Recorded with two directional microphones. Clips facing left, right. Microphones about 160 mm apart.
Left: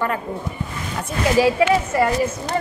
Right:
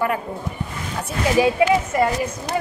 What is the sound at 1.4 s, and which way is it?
A woman's voice, 20° right (ahead or behind).